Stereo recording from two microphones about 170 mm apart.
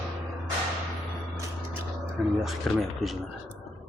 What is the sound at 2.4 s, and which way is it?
Speech, centre (ahead or behind).